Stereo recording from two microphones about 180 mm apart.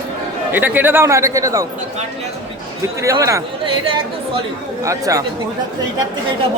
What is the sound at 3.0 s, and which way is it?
Speech, 15° right (ahead or behind).